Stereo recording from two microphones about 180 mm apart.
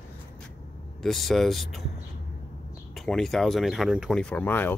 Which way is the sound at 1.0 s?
Centre (ahead or behind).